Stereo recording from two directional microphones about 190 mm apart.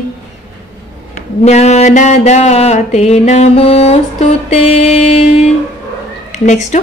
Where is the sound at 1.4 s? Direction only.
35° left (ahead or behind).